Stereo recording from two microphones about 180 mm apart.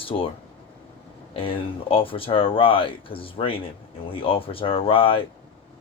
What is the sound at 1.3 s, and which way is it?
Speech, 30° left (ahead or behind).